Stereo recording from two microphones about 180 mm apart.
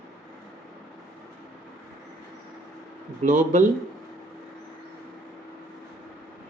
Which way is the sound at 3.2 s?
45° right (ahead or behind).